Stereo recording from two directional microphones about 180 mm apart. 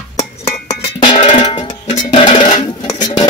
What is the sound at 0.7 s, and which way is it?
Drum, 25° left (ahead or behind).